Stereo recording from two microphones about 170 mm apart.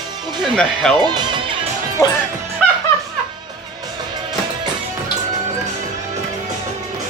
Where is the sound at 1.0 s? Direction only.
25° right (ahead or behind).